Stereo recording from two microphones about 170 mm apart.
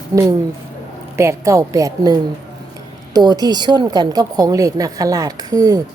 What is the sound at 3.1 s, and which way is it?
A woman's voice, 25° right (ahead or behind).